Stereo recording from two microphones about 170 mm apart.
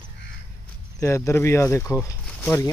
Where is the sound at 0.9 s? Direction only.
15° left (ahead or behind).